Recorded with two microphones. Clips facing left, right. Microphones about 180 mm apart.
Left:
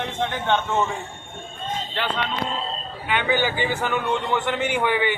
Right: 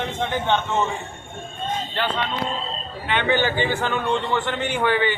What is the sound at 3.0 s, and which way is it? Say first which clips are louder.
A man's voice: right 1 dB; 10° left (ahead or behind).